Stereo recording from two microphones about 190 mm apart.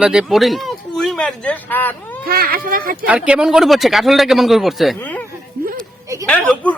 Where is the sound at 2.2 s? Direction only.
50° right (ahead or behind).